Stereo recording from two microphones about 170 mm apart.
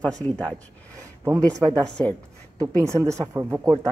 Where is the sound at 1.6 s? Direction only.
20° right (ahead or behind).